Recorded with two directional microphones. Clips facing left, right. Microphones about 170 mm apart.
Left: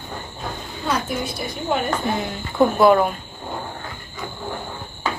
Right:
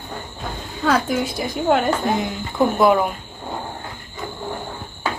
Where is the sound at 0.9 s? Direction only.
90° right.